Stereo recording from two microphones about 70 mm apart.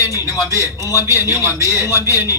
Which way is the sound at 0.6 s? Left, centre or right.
Left.